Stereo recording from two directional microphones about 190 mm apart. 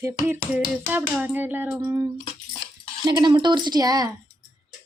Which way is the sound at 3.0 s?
20° right (ahead or behind).